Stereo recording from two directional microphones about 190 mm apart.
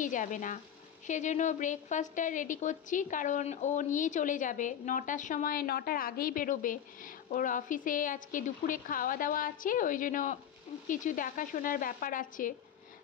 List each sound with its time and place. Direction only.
0.0 s a woman's voice: 40° left (ahead or behind)